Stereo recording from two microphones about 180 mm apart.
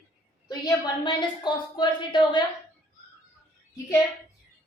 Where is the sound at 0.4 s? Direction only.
25° left (ahead or behind).